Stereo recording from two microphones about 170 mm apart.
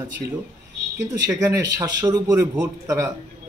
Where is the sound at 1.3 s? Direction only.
15° right (ahead or behind).